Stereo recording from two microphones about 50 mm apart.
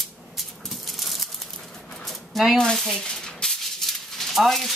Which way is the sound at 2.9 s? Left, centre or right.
Centre.